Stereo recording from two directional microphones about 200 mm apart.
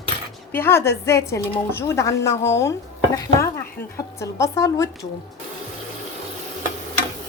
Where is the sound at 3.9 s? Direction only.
15° left (ahead or behind).